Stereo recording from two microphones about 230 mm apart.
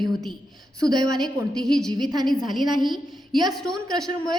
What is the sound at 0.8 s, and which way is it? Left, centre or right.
Speech, centre.